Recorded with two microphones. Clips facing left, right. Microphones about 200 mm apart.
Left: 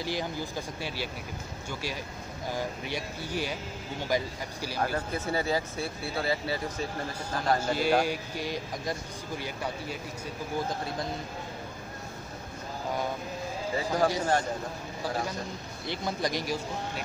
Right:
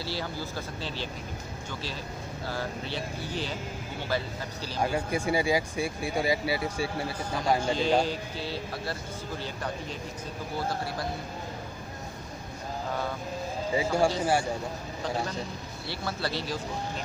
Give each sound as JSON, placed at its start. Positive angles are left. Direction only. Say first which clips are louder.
{"t": 0.0, "sound": "a man's voice", "louder": "left 2 dB", "side_deg": 15}
{"t": 2.5, "sound": "a man's voice", "louder": "left 1 dB", "side_deg": 15}
{"t": 4.7, "sound": "speech", "louder": "right 3 dB", "side_deg": -15}
{"t": 7.6, "sound": "a man's voice", "louder": "even", "side_deg": 10}
{"t": 13.7, "sound": "speech", "louder": "right 2 dB", "side_deg": -10}
{"t": 15.9, "sound": "a man's voice", "louder": "left 2 dB", "side_deg": 15}